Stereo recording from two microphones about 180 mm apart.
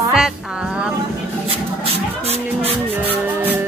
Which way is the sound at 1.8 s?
35° right (ahead or behind).